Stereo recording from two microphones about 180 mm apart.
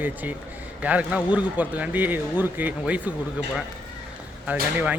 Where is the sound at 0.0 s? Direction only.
10° right (ahead or behind).